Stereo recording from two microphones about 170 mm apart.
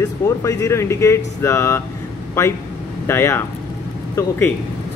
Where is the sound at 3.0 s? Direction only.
15° left (ahead or behind).